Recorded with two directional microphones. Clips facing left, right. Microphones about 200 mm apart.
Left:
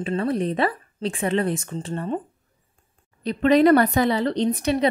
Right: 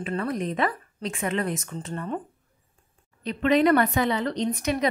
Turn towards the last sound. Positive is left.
turn(degrees=30)  # may be behind; listen again after turning